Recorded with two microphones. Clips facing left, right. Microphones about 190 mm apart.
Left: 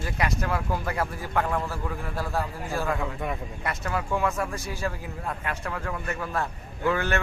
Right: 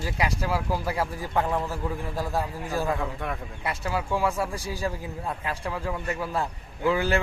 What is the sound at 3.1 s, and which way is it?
Speech, 5° left (ahead or behind).